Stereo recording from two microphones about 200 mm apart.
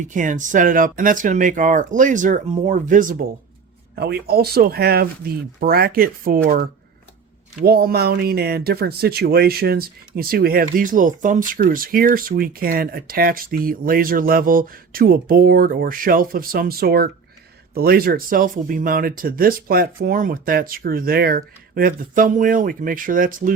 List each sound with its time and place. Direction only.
0.0 s speech: 40° right (ahead or behind)
3.9 s speech: 55° right (ahead or behind)